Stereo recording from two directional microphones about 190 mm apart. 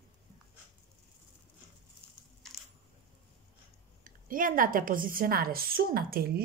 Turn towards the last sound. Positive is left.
turn(degrees=-55)  # may be behind; listen again after turning